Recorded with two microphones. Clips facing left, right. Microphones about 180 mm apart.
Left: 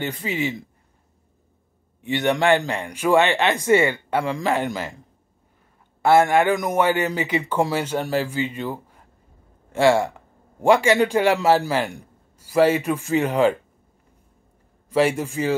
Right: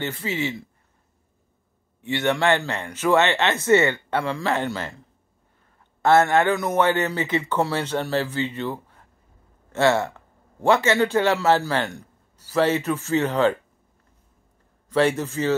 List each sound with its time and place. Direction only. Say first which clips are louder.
0.0 s speech: left 1 dB; 15° left (ahead or behind)
2.0 s speech: left 2 dB; 15° left (ahead or behind)
6.0 s speech: left 1 dB; 10° left (ahead or behind)
14.9 s speech: left 1 dB; 10° left (ahead or behind)